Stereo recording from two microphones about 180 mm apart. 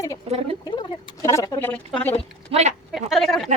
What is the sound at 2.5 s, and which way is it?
Speech, 40° right (ahead or behind).